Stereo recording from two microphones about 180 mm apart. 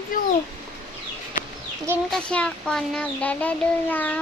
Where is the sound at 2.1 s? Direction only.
5° left (ahead or behind).